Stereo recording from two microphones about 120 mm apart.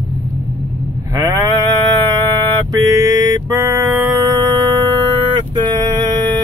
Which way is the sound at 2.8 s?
30° right (ahead or behind).